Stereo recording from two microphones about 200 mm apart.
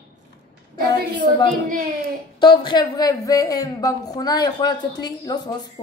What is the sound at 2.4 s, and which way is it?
A woman's voice, 25° left (ahead or behind).